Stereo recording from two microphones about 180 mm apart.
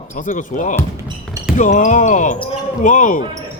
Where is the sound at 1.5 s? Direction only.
45° left (ahead or behind).